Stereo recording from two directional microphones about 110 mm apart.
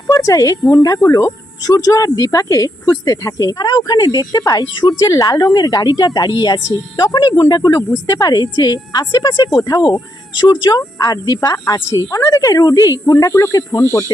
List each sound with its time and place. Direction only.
0.1 s speech: 30° left (ahead or behind)